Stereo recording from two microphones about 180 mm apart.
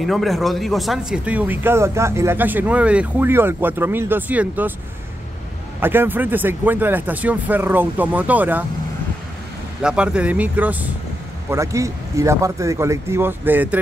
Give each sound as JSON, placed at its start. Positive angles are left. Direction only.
{"t": 0.0, "sound": "speech", "side_deg": 0}
{"t": 5.8, "sound": "speech", "side_deg": -10}
{"t": 9.8, "sound": "speech", "side_deg": -5}